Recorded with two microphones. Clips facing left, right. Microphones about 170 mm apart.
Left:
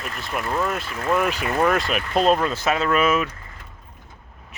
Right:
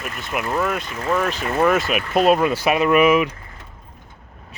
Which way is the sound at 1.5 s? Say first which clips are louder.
Right 4 dB; 5° right (ahead or behind).